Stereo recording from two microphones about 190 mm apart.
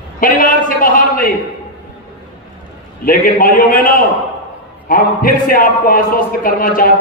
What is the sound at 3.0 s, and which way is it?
A man's voice, 50° left (ahead or behind).